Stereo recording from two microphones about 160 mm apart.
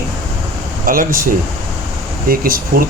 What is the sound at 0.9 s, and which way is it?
Speech, 60° right (ahead or behind).